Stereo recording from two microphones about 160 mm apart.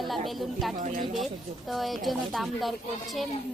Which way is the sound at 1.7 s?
Centre (ahead or behind).